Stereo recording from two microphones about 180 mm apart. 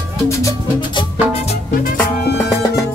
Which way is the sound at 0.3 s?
20° left (ahead or behind).